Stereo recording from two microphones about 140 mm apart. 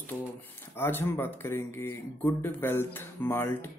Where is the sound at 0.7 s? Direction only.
15° left (ahead or behind).